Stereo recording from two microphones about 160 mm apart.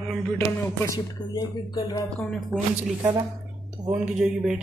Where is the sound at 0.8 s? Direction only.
20° left (ahead or behind).